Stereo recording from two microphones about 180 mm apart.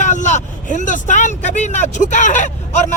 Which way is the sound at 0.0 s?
40° left (ahead or behind).